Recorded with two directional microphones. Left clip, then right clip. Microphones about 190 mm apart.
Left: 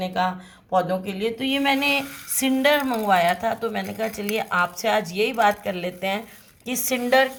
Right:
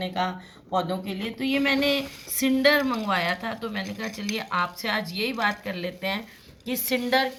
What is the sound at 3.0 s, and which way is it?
Speech, 45° left (ahead or behind).